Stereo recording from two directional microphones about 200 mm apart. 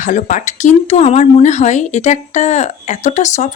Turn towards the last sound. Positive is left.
turn(degrees=35)  # may be behind; listen again after turning